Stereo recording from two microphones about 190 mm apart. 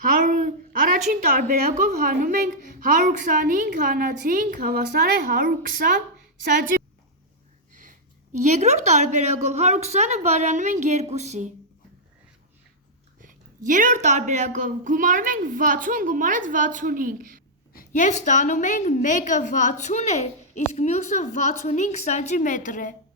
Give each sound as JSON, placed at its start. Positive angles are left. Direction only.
{"t": 0.2, "sound": "a woman's voice", "side_deg": -40}
{"t": 13.2, "sound": "a woman's voice", "side_deg": -45}
{"t": 17.7, "sound": "a woman's voice", "side_deg": 40}